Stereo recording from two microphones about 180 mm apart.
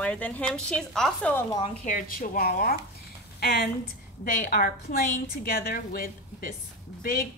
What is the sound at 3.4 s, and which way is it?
Speech, 65° left (ahead or behind).